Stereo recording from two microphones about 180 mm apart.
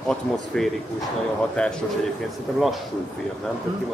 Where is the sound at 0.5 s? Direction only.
5° left (ahead or behind).